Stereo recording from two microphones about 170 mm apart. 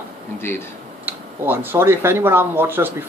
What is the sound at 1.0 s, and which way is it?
Speech, 10° right (ahead or behind).